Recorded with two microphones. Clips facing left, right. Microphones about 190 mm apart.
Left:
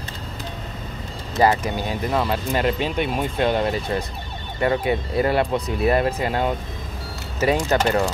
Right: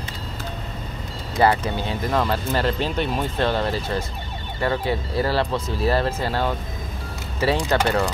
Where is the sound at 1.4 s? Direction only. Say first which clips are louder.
Even; 10° left (ahead or behind).